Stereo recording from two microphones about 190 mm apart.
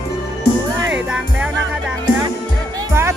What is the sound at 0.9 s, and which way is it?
Music, 5° right (ahead or behind).